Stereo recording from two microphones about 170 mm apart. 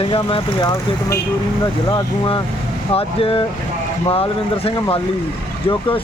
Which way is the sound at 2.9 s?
35° left (ahead or behind).